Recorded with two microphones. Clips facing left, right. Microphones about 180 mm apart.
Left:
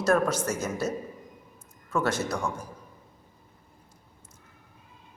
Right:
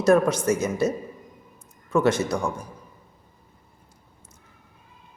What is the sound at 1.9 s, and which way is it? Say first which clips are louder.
Speech: right 7 dB; 15° right (ahead or behind).